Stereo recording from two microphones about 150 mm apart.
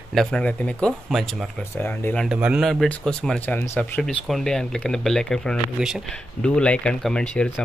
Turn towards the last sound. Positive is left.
turn(degrees=5)  # may be behind; listen again after turning